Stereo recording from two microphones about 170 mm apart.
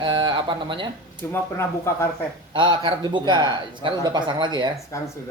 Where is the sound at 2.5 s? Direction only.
30° right (ahead or behind).